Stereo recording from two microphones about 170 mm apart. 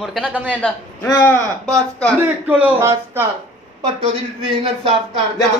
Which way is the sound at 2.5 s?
10° right (ahead or behind).